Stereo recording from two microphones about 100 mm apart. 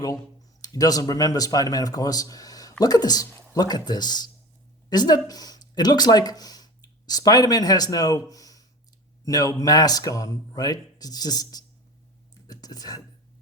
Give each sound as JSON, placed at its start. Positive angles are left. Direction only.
{"t": 0.6, "sound": "speech", "side_deg": 35}
{"t": 12.5, "sound": "whispering", "side_deg": 40}